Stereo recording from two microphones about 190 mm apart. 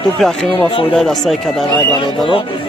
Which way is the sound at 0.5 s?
25° left (ahead or behind).